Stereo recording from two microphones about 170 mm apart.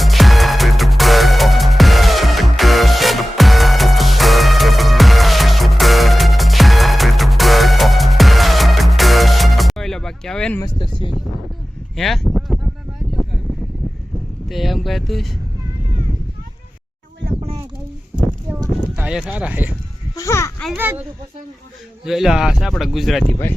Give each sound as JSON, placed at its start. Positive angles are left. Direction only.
{"t": 0.0, "sound": "music", "side_deg": 0}
{"t": 10.6, "sound": "speech", "side_deg": 25}
{"t": 11.9, "sound": "a sound", "side_deg": 0}
{"t": 14.5, "sound": "vehicle", "side_deg": 0}
{"t": 18.9, "sound": "a sound", "side_deg": -5}
{"t": 19.3, "sound": "speech", "side_deg": -10}
{"t": 20.1, "sound": "babbling", "side_deg": 15}
{"t": 22.0, "sound": "speech", "side_deg": 0}